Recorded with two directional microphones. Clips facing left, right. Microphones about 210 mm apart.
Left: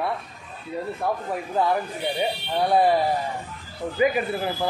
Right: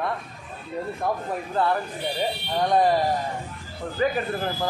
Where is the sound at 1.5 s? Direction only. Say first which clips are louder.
Left 1 dB; 10° left (ahead or behind).